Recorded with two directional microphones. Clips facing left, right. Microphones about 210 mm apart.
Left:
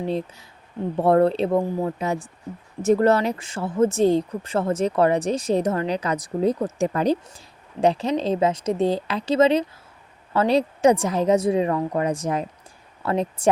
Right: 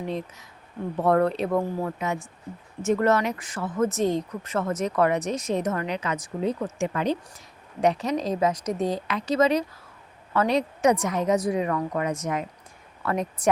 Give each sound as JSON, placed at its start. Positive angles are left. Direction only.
{"t": 0.0, "sound": "a woman's voice", "side_deg": 30}